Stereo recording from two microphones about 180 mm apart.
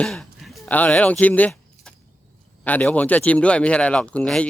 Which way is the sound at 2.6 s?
10° left (ahead or behind).